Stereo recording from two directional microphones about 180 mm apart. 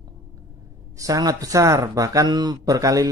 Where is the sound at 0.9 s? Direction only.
20° right (ahead or behind).